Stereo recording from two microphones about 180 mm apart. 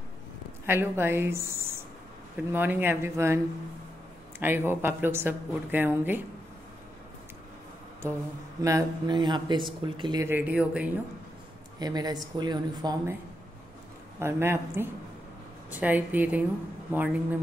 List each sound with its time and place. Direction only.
0.7 s a woman's voice: 15° right (ahead or behind)
4.4 s a woman's voice: 10° right (ahead or behind)
8.6 s speech: 20° right (ahead or behind)
10.2 s a woman's voice: 10° right (ahead or behind)
11.8 s speech: 20° right (ahead or behind)
14.2 s a woman's voice: 15° right (ahead or behind)